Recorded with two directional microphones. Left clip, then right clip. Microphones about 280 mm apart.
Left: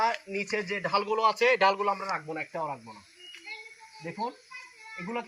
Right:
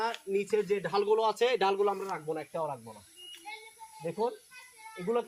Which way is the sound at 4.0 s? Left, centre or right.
Left.